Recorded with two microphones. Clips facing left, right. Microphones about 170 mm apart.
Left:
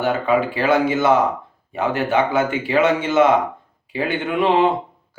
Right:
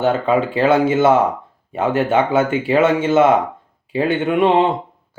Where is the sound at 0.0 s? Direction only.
25° right (ahead or behind).